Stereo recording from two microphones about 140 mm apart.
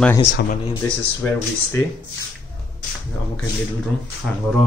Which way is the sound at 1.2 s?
15° left (ahead or behind).